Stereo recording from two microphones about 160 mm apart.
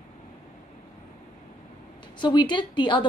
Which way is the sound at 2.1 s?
30° left (ahead or behind).